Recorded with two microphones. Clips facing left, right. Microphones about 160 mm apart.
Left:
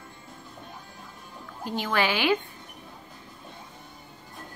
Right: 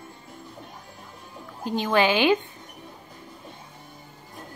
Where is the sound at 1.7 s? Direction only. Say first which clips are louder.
Right 5 dB; 20° right (ahead or behind).